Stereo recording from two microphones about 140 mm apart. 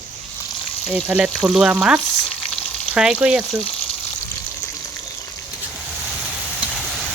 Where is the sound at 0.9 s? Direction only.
10° right (ahead or behind).